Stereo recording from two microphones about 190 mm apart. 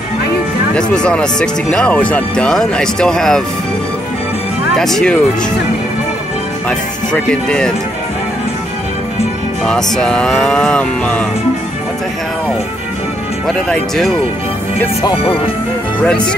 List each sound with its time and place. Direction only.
0.7 s speech: 5° left (ahead or behind)
4.7 s speech: centre (ahead or behind)
6.7 s speech: 5° left (ahead or behind)
9.7 s speech: 5° left (ahead or behind)
13.5 s speech: 5° left (ahead or behind)
15.0 s speech: 30° left (ahead or behind)
16.0 s speech: 5° left (ahead or behind)